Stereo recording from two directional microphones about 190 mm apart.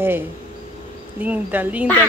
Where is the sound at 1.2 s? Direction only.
10° right (ahead or behind).